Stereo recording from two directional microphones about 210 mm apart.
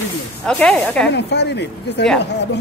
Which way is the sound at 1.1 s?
55° left (ahead or behind).